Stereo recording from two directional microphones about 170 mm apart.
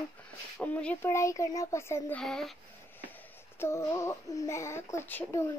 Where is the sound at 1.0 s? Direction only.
20° left (ahead or behind).